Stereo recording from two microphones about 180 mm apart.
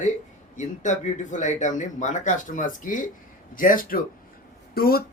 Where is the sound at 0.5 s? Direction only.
40° left (ahead or behind).